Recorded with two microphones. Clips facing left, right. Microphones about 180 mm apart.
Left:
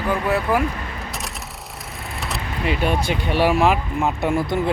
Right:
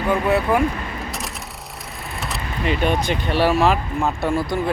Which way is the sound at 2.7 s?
5° left (ahead or behind).